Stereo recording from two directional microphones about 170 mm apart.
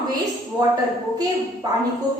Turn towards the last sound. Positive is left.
turn(degrees=-25)  # may be behind; listen again after turning